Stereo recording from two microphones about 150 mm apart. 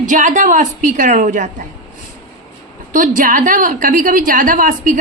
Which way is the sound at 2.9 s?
65° right (ahead or behind).